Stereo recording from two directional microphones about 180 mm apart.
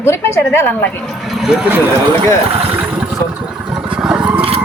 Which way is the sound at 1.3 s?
5° right (ahead or behind).